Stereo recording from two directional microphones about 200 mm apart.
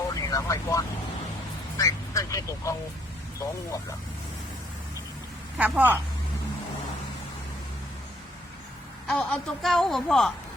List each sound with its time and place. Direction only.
0.1 s vehicle: 15° left (ahead or behind)
1.8 s speech: 15° left (ahead or behind)
5.5 s a woman's voice: 10° right (ahead or behind)
9.0 s a woman's voice: centre (ahead or behind)